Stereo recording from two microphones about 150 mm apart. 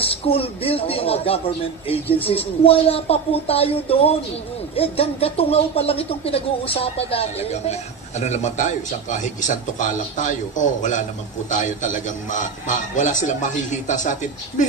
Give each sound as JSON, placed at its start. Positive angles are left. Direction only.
{"t": 0.0, "sound": "a man's voice", "side_deg": 40}